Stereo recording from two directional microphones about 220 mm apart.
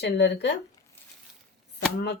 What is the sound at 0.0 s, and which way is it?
Speech, 50° left (ahead or behind).